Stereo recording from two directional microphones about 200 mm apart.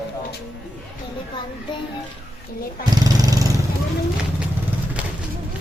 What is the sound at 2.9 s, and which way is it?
Speech, 20° right (ahead or behind).